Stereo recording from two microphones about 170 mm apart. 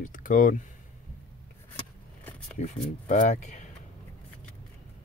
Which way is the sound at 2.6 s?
45° left (ahead or behind).